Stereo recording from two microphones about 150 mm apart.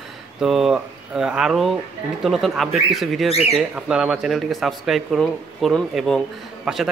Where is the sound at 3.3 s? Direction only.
45° left (ahead or behind).